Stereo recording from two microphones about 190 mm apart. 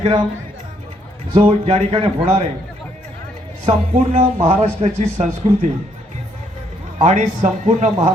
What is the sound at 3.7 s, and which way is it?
Speech, 35° right (ahead or behind).